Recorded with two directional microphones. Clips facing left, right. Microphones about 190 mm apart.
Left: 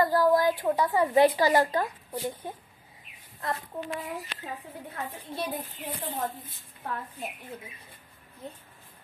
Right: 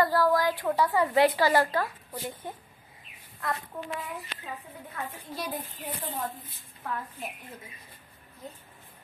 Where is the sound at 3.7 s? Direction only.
20° left (ahead or behind).